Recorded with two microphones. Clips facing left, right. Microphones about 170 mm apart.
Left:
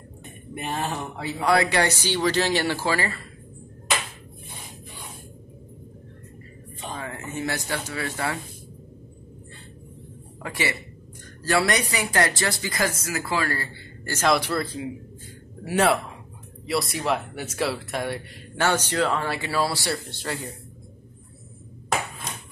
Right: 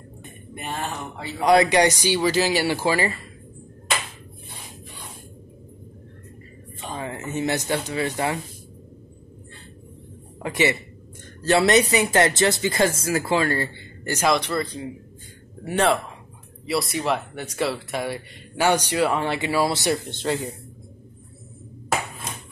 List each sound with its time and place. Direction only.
1.4 s speech: 20° right (ahead or behind)
7.0 s speech: 20° right (ahead or behind)
10.4 s speech: 20° right (ahead or behind)
14.3 s speech: 5° left (ahead or behind)
18.7 s speech: 15° right (ahead or behind)